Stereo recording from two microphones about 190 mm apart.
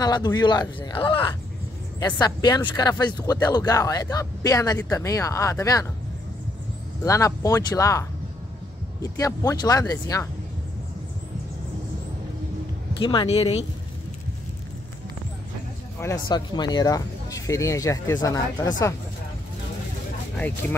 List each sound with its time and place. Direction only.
0.0 s speech: 20° left (ahead or behind)
7.1 s speech: 15° left (ahead or behind)
13.0 s speech: 25° left (ahead or behind)
16.0 s speech: 20° left (ahead or behind)